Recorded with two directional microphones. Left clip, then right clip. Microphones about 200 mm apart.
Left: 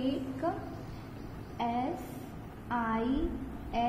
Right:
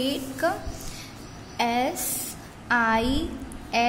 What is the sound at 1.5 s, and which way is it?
A woman's voice, 55° right (ahead or behind).